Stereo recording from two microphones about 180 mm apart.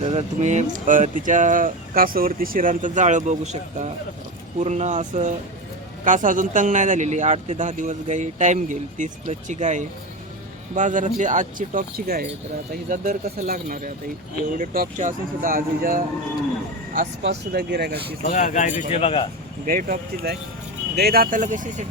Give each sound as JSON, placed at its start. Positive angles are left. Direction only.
{"t": 0.0, "sound": "speech", "side_deg": -35}
{"t": 17.2, "sound": "speech", "side_deg": -65}
{"t": 18.2, "sound": "speech", "side_deg": 40}
{"t": 19.6, "sound": "speech", "side_deg": -50}